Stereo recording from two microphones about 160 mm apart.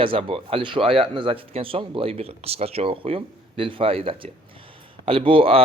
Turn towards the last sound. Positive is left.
turn(degrees=-35)  # may be behind; listen again after turning